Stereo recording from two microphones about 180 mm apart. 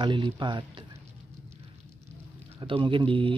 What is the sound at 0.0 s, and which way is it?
Speech, 25° right (ahead or behind).